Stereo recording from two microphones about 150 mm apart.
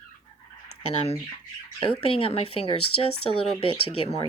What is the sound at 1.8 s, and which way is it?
Speech, 40° left (ahead or behind).